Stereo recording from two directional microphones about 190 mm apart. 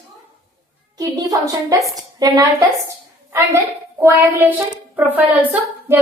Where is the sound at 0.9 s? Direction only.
20° right (ahead or behind).